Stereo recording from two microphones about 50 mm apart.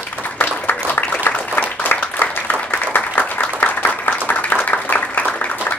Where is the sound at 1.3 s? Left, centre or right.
Left.